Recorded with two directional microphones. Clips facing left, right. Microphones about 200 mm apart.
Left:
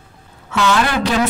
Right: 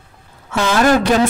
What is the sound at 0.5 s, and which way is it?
Speech, 45° right (ahead or behind).